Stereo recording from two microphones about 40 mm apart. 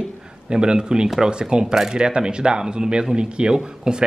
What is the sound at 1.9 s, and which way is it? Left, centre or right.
Speech, centre.